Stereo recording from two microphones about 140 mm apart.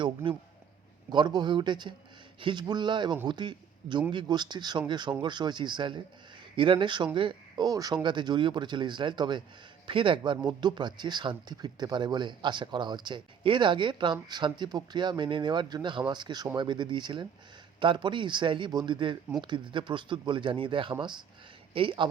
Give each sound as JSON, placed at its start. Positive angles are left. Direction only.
{"t": 1.1, "sound": "a man's voice", "side_deg": -35}